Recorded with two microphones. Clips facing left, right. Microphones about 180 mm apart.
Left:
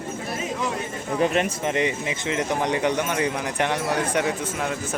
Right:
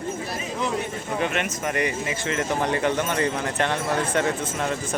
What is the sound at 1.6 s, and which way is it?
A man's voice, 20° left (ahead or behind).